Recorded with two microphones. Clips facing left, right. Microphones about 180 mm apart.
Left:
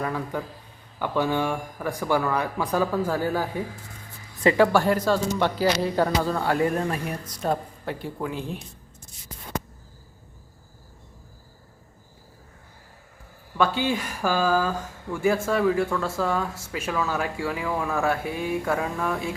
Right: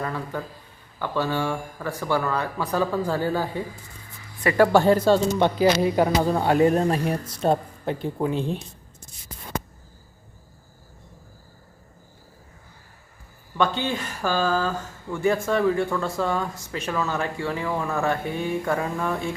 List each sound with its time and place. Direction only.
0.0 s speech: 10° left (ahead or behind)
4.7 s speech: 25° right (ahead or behind)
13.6 s speech: 10° left (ahead or behind)